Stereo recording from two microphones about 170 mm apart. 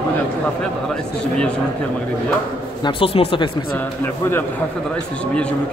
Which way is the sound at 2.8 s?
30° left (ahead or behind).